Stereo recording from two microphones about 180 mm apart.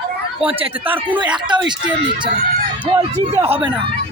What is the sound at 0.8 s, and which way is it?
Speech, 10° right (ahead or behind).